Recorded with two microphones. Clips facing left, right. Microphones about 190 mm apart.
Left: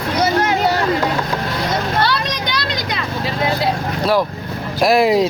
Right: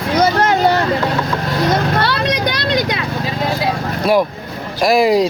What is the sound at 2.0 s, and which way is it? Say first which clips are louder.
Vehicle: right 2 dB; 55° right (ahead or behind).